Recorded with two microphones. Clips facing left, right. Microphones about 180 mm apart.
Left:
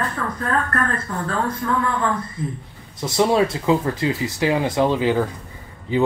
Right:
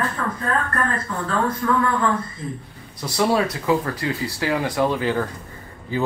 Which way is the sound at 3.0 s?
20° left (ahead or behind).